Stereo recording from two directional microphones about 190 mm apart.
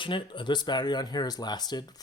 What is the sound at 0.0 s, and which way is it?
Speech, 25° left (ahead or behind).